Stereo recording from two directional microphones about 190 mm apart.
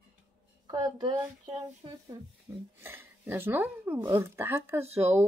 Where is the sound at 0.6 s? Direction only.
20° right (ahead or behind).